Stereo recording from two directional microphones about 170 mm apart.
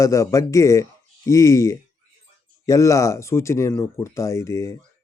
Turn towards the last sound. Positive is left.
turn(degrees=20)  # may be behind; listen again after turning